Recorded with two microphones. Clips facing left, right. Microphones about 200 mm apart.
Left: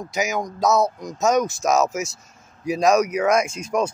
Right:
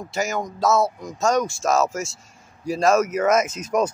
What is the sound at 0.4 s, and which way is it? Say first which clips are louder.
Speech: left 1 dB; 20° left (ahead or behind).